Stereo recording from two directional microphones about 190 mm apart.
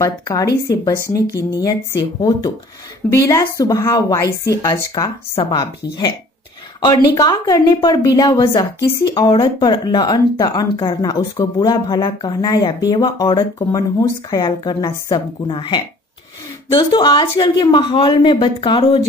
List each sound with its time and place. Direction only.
0.0 s speech: 20° left (ahead or behind)
7.2 s speech: 20° left (ahead or behind)